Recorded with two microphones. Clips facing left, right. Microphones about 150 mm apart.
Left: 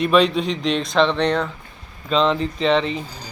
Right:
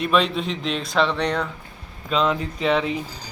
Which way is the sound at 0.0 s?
Centre (ahead or behind).